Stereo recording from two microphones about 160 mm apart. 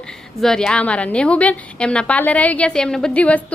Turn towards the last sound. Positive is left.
turn(degrees=10)  # may be behind; listen again after turning